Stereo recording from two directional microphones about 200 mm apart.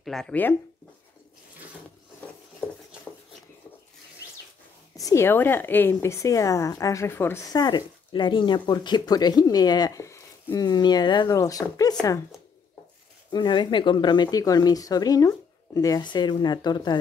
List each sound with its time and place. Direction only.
0.0 s speech: centre (ahead or behind)
4.9 s a woman's voice: 15° left (ahead or behind)
13.3 s speech: 20° left (ahead or behind)